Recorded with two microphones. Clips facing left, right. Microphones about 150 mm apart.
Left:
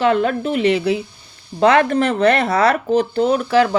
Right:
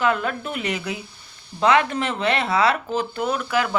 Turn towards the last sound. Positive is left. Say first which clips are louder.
# left 8 dB
turn(degrees=35)  # may be behind; listen again after turning